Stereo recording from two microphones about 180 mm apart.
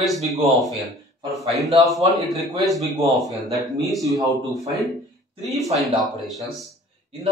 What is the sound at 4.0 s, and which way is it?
Speech, 20° right (ahead or behind).